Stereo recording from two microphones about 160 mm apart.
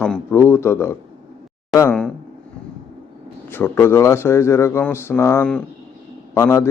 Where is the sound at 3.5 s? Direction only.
15° left (ahead or behind).